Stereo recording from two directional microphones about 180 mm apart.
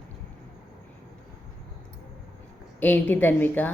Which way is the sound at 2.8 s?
10° left (ahead or behind).